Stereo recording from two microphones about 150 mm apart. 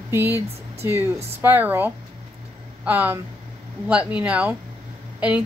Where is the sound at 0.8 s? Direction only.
15° right (ahead or behind).